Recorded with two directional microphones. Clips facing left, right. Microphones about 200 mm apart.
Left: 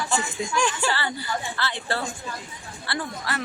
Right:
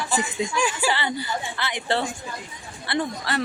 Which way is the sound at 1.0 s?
20° right (ahead or behind).